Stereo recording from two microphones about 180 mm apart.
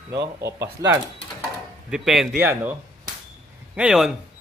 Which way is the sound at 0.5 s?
20° right (ahead or behind).